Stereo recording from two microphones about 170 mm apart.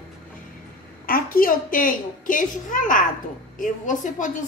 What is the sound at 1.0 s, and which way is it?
A woman's voice, 55° left (ahead or behind).